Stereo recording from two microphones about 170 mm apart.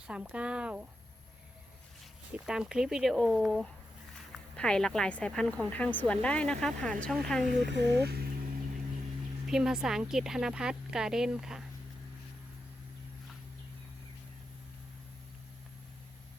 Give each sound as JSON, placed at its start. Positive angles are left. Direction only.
{"t": 0.1, "sound": "speech", "side_deg": -5}
{"t": 2.3, "sound": "speech", "side_deg": -5}
{"t": 7.7, "sound": "speech", "side_deg": -90}
{"t": 9.5, "sound": "speech", "side_deg": -5}